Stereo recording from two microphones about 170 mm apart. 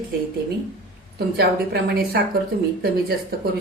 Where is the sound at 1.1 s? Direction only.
65° right (ahead or behind).